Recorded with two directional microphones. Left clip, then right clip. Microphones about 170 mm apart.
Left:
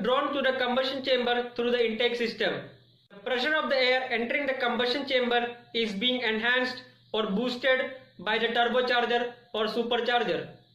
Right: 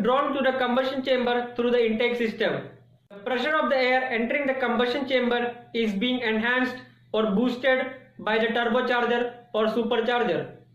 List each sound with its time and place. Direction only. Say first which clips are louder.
0.0 s speech: right 3 dB; 20° left (ahead or behind)